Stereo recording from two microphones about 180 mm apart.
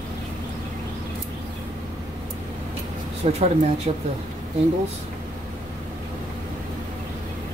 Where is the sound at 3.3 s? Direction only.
35° right (ahead or behind).